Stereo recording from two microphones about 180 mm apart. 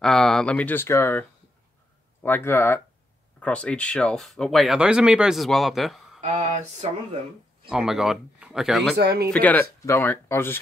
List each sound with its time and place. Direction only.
0.0 s speech: centre (ahead or behind)
2.2 s speech: 10° left (ahead or behind)
6.2 s a sound: 40° right (ahead or behind)
7.7 s speech: 5° right (ahead or behind)
8.9 s speech: 60° right (ahead or behind)
9.3 s speech: 10° left (ahead or behind)